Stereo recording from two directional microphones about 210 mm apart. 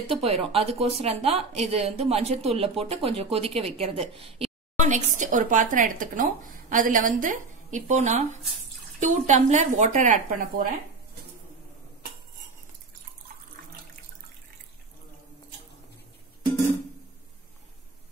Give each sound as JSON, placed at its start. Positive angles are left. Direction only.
{"t": 0.1, "sound": "a woman's voice", "side_deg": -30}